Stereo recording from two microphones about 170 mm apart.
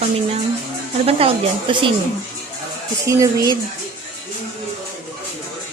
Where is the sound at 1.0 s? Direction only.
35° right (ahead or behind).